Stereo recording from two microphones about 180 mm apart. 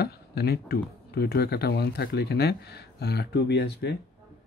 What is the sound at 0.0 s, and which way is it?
Speech, 60° left (ahead or behind).